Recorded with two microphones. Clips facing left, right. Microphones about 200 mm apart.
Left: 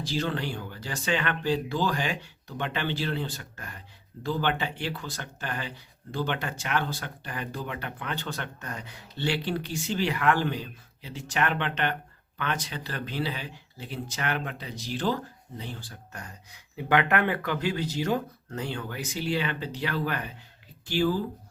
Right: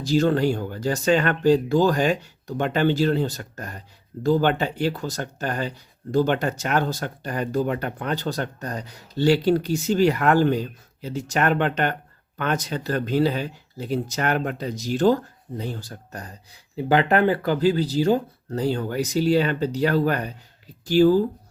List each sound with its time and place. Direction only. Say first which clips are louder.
0.0 s speech: right 10 dB; 45° right (ahead or behind)